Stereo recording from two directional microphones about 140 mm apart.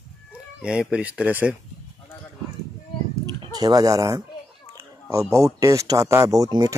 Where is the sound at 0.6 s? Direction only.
5° right (ahead or behind).